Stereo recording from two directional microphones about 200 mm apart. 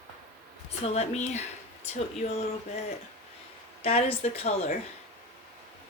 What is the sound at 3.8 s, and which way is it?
Speech, 30° left (ahead or behind).